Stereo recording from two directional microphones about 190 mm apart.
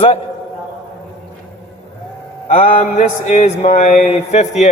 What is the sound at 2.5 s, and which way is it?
Mantra, 30° left (ahead or behind).